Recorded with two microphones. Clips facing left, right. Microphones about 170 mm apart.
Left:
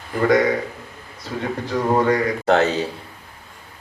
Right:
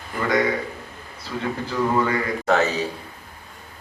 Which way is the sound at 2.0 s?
35° left (ahead or behind).